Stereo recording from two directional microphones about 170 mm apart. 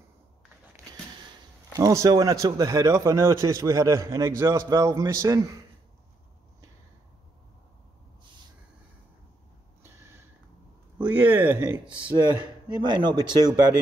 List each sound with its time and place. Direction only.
1.8 s a man's voice: 20° right (ahead or behind)
11.0 s speech: 10° right (ahead or behind)
12.0 s a man's voice: 25° right (ahead or behind)